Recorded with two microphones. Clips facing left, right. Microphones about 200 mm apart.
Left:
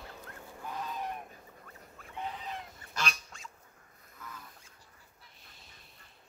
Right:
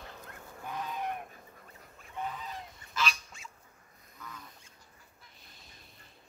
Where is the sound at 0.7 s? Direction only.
60° right (ahead or behind).